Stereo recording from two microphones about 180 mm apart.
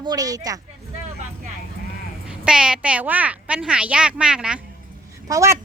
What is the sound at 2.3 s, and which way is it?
A woman's voice, 5° right (ahead or behind).